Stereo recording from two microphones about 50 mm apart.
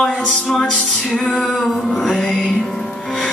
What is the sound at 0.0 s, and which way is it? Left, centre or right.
Speech, centre.